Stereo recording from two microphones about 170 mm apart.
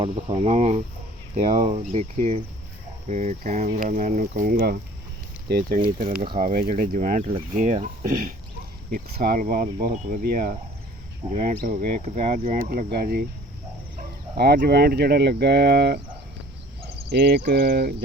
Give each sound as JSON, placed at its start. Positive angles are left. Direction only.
{"t": 0.3, "sound": "speech", "side_deg": -45}
{"t": 12.5, "sound": "speech", "side_deg": -55}
{"t": 14.3, "sound": "speech", "side_deg": -65}
{"t": 17.1, "sound": "speech", "side_deg": -75}